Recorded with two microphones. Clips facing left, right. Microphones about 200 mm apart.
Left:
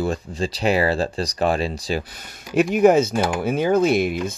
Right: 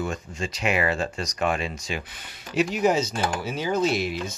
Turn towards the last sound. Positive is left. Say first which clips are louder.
# left 6 dB
turn(degrees=55)  # may be behind; listen again after turning